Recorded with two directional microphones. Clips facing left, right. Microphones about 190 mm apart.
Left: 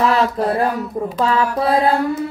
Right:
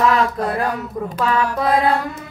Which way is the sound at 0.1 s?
30° left (ahead or behind).